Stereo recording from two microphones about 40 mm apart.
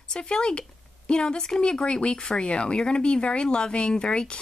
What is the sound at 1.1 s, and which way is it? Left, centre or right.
Speech, left.